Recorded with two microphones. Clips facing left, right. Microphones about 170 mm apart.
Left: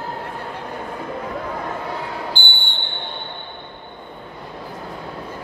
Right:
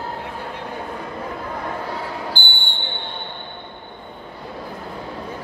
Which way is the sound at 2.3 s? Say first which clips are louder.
Even; 10° right (ahead or behind).